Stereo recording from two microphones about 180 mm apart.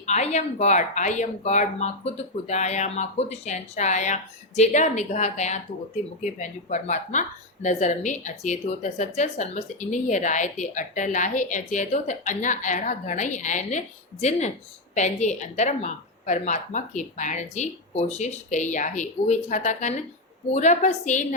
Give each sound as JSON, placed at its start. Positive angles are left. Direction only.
{"t": 0.0, "sound": "a woman's voice", "side_deg": 40}